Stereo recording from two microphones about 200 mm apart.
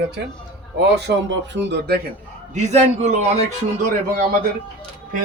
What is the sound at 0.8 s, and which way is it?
Speech, 60° right (ahead or behind).